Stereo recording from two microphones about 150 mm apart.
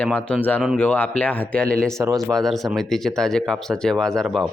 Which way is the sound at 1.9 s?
20° right (ahead or behind).